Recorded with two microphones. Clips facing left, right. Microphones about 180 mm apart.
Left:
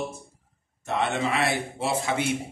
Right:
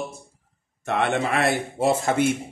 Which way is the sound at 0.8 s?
60° right (ahead or behind).